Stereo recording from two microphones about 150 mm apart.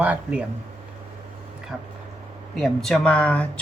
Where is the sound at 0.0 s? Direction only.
10° right (ahead or behind).